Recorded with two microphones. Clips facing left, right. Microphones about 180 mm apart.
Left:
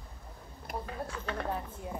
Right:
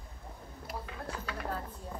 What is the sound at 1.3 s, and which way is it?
Speech, 20° left (ahead or behind).